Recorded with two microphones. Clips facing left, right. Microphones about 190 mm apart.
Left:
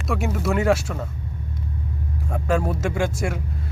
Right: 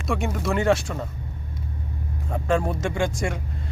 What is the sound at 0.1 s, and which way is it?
Speech, 5° left (ahead or behind).